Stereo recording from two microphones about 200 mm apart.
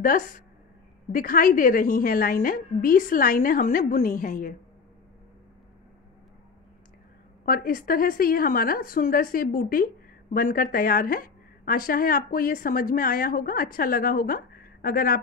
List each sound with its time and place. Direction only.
0.0 s a woman's voice: 40° left (ahead or behind)
7.4 s a woman's voice: 45° left (ahead or behind)